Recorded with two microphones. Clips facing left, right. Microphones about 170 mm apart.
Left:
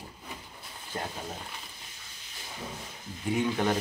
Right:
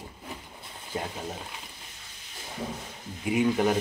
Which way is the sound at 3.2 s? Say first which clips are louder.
Right 4 dB; 10° right (ahead or behind).